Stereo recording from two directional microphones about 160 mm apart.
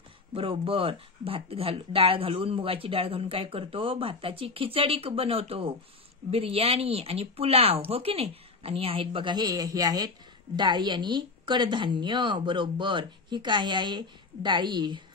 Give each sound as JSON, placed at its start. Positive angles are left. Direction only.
{"t": 0.3, "sound": "speech", "side_deg": -35}